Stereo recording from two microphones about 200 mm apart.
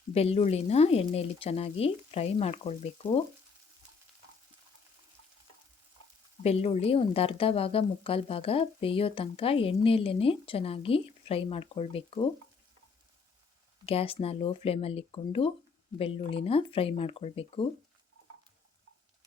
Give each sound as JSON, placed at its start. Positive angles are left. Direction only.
{"t": 0.1, "sound": "speech", "side_deg": 30}
{"t": 6.4, "sound": "a woman's voice", "side_deg": 30}
{"t": 13.8, "sound": "a woman's voice", "side_deg": 30}